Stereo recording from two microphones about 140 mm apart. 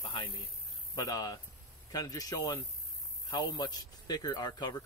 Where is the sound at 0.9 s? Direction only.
25° left (ahead or behind).